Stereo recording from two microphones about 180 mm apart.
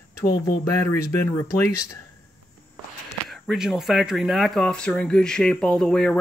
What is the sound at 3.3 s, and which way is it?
Speech, centre (ahead or behind).